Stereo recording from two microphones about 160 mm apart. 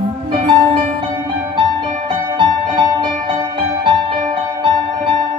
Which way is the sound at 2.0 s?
30° right (ahead or behind).